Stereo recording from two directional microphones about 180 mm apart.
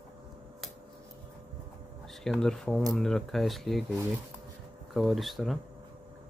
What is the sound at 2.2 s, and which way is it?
Speech, 5° left (ahead or behind).